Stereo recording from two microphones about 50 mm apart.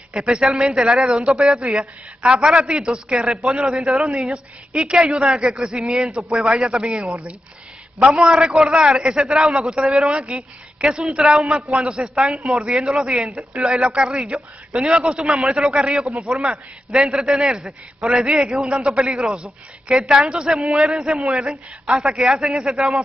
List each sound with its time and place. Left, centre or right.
0.2 s speech: centre
4.2 s a man's voice: centre
8.2 s speech: centre
11.8 s a man's voice: centre
16.1 s speech: centre
18.7 s speech: centre